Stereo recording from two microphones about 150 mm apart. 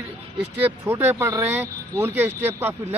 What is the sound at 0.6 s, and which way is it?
Speech, 15° right (ahead or behind).